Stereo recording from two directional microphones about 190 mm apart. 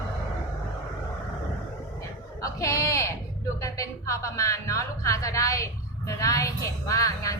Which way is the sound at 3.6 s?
15° left (ahead or behind).